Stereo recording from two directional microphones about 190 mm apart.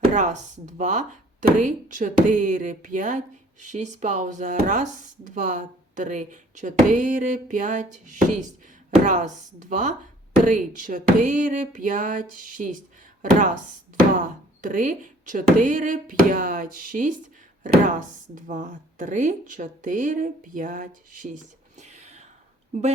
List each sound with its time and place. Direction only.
0.1 s speech: 40° right (ahead or behind)